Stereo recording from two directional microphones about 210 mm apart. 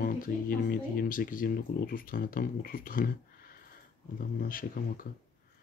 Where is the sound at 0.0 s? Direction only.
40° left (ahead or behind).